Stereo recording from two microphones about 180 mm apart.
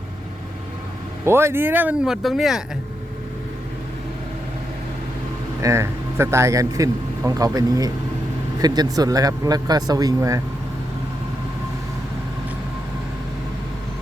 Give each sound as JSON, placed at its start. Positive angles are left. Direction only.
{"t": 1.2, "sound": "speech", "side_deg": -15}
{"t": 5.6, "sound": "speech", "side_deg": -15}